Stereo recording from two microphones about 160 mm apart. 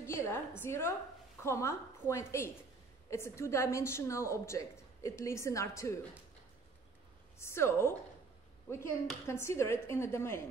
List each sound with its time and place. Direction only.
0.0 s a sound: 15° left (ahead or behind)
0.6 s a woman's voice: 15° left (ahead or behind)
7.3 s a woman's voice: 15° left (ahead or behind)